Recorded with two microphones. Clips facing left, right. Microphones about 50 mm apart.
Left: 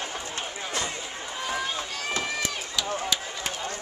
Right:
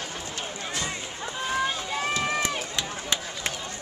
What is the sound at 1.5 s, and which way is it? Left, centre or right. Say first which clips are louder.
Run: right 4 dB; centre.